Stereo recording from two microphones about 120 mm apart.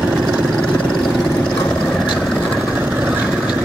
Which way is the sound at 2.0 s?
5° right (ahead or behind).